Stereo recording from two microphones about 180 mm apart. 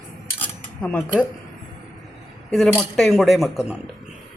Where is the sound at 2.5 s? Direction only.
Centre (ahead or behind).